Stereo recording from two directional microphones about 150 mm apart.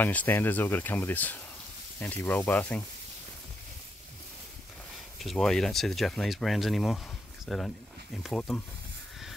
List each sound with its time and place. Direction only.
0.0 s speech: 10° left (ahead or behind)
5.2 s speech: centre (ahead or behind)